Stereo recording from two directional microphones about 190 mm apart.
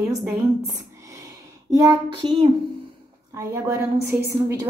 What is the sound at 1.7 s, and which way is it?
A woman's voice, 20° right (ahead or behind).